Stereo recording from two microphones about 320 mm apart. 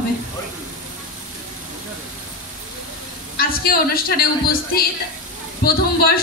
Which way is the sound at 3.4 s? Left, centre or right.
Left.